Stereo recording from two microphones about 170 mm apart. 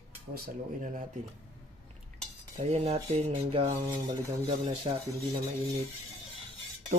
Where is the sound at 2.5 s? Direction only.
40° right (ahead or behind).